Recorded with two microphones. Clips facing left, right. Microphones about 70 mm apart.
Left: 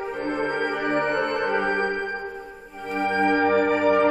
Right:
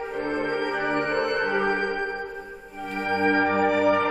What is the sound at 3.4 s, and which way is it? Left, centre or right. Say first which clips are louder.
Music: left 1 dB; centre.